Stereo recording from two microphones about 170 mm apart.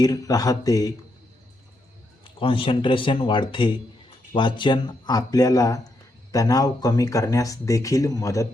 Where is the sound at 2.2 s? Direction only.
30° left (ahead or behind).